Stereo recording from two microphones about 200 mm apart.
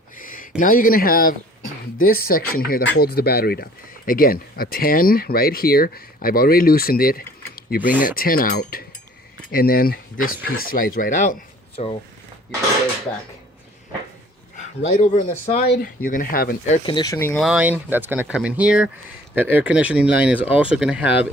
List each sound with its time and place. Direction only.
0.2 s a sound: 40° left (ahead or behind)
0.6 s speech: 45° left (ahead or behind)
7.8 s speech: 10° right (ahead or behind)
8.0 s speech: 45° left (ahead or behind)
14.8 s speech: 35° left (ahead or behind)
16.6 s speech: 35° left (ahead or behind)
16.9 s speech: 20° left (ahead or behind)
17.4 s speech: 5° right (ahead or behind)